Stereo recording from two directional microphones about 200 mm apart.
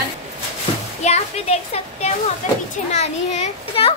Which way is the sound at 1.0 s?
35° left (ahead or behind).